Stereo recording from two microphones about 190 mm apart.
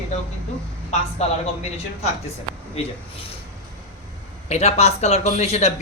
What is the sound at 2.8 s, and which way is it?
Speech, 30° left (ahead or behind).